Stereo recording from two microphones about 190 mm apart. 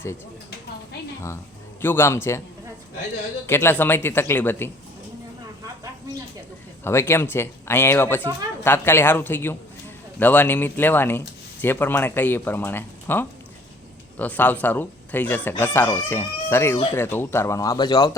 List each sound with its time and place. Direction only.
1.8 s speech: 10° left (ahead or behind)
3.4 s speech: 15° left (ahead or behind)
6.8 s speech: 15° left (ahead or behind)